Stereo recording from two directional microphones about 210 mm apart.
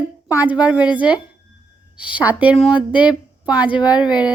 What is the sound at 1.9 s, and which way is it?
A woman's voice, 5° right (ahead or behind).